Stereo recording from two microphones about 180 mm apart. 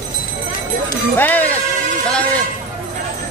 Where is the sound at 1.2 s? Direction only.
10° left (ahead or behind).